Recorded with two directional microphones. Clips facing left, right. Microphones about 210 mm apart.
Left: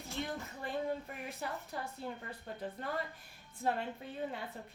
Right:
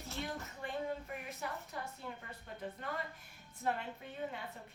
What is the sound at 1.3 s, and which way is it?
Speech, 30° left (ahead or behind).